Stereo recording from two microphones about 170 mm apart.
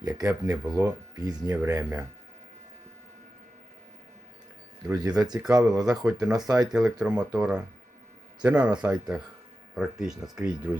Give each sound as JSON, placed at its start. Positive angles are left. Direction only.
{"t": 0.0, "sound": "speech", "side_deg": -20}
{"t": 4.9, "sound": "speech", "side_deg": -20}
{"t": 5.6, "sound": "speech", "side_deg": -5}
{"t": 6.0, "sound": "speech", "side_deg": -20}
{"t": 6.2, "sound": "speech", "side_deg": -5}
{"t": 6.5, "sound": "speech", "side_deg": -20}
{"t": 7.0, "sound": "speech", "side_deg": -5}